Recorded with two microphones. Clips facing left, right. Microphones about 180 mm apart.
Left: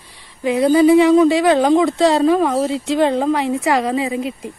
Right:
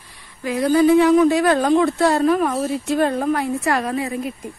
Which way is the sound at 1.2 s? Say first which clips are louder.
Left 2 dB; 90° left.